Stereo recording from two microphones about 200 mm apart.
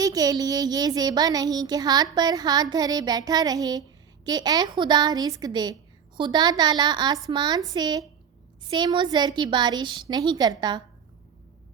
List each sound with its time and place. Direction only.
0.0 s a child's voice: 20° right (ahead or behind)